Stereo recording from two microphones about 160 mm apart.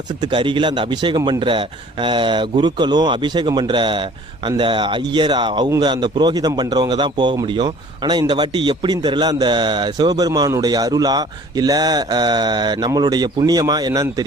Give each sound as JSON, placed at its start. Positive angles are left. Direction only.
{"t": 0.2, "sound": "a man's voice", "side_deg": -30}